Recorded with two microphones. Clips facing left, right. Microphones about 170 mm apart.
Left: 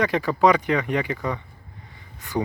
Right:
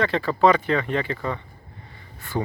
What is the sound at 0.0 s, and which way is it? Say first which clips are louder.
Speech: even; 15° left (ahead or behind).